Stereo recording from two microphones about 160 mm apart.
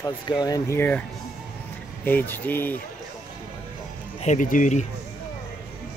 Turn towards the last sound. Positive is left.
turn(degrees=50)  # may be behind; listen again after turning